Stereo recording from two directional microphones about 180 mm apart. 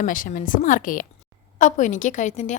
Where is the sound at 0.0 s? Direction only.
45° left (ahead or behind).